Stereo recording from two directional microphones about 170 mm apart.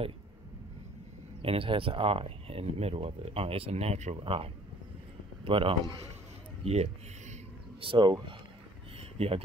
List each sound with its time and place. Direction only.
1.4 s speech: 35° right (ahead or behind)